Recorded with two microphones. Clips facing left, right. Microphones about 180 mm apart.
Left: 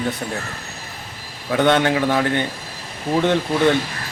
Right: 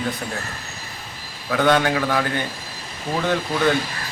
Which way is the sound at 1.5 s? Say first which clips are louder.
Left 2 dB; 25° left (ahead or behind).